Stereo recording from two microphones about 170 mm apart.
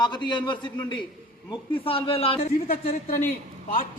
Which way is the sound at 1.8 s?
35° left (ahead or behind).